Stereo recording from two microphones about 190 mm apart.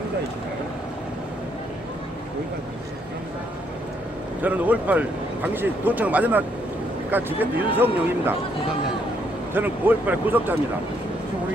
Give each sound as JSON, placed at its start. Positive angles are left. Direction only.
{"t": 4.4, "sound": "speech", "side_deg": -10}
{"t": 9.6, "sound": "speech", "side_deg": -10}